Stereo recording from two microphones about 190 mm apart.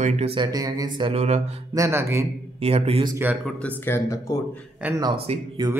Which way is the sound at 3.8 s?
15° left (ahead or behind).